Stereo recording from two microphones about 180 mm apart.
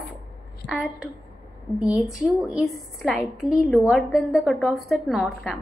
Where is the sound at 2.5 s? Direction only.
Centre (ahead or behind).